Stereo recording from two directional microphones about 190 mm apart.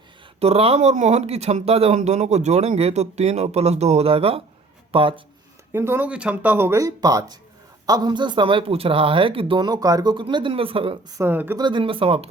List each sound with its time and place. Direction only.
0.3 s speech: 30° right (ahead or behind)
5.7 s speech: 10° right (ahead or behind); by 10.9 s 30° right (ahead or behind)
11.2 s speech: 10° right (ahead or behind)
11.6 s speech: 25° right (ahead or behind)